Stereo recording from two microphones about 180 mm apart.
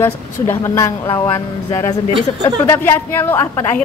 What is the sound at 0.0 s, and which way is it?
A woman's voice, 15° left (ahead or behind).